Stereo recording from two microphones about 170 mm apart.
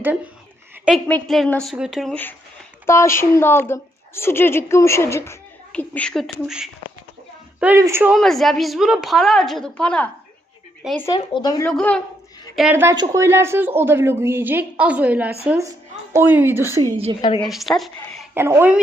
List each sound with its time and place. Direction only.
0.9 s a woman's voice: 5° left (ahead or behind)
2.8 s a woman's voice: 15° left (ahead or behind); by 6.7 s centre (ahead or behind)
7.6 s a woman's voice: 15° right (ahead or behind)
8.1 s a woman's voice: centre (ahead or behind)
11.2 s speech: 25° left (ahead or behind)
11.6 s a woman's voice: 5° left (ahead or behind)
12.7 s a woman's voice: 15° right (ahead or behind)
17.2 s speech: 30° left (ahead or behind)
17.4 s a woman's voice: centre (ahead or behind)
18.3 s a woman's voice: 15° right (ahead or behind)